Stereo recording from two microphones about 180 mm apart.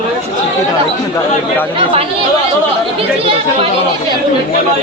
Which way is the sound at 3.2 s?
30° right (ahead or behind).